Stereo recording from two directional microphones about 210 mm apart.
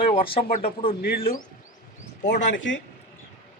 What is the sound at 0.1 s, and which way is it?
Speech, 25° left (ahead or behind).